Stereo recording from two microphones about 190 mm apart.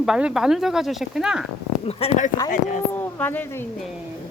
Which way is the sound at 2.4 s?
45° left (ahead or behind).